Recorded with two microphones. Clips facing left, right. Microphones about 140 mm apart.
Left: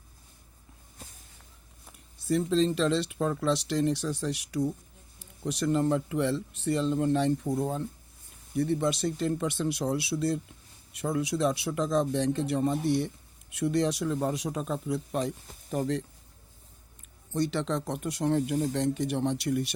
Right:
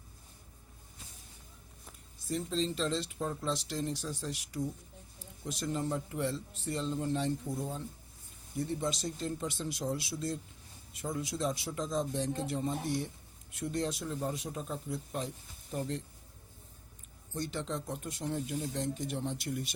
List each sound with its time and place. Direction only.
2.2 s speech: 75° left (ahead or behind)
15.7 s speech: 90° left
17.3 s speech: 80° left